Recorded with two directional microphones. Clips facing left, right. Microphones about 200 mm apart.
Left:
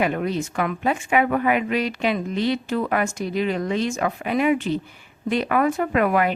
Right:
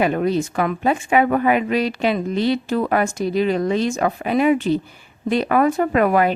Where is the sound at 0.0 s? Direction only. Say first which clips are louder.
Right 4 dB; 35° right (ahead or behind).